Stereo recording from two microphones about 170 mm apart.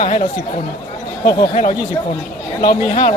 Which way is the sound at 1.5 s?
40° left (ahead or behind).